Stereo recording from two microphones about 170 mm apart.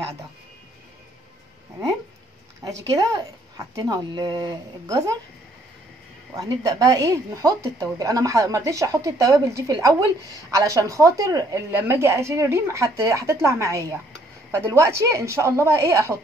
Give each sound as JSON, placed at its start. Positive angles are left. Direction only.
{"t": 2.6, "sound": "speech", "side_deg": -20}
{"t": 6.3, "sound": "speech", "side_deg": -20}